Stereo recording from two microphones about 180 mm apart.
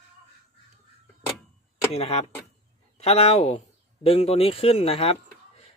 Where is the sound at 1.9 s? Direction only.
35° left (ahead or behind).